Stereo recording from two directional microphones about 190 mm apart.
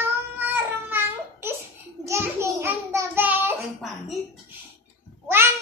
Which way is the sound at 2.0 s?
15° right (ahead or behind).